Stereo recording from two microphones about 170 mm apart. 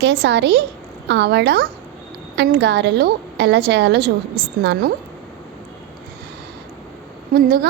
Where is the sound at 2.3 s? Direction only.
90° right.